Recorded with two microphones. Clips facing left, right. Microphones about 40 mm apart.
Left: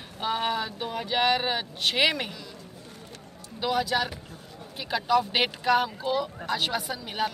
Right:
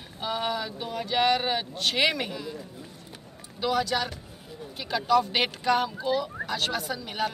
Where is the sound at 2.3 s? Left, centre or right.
Centre.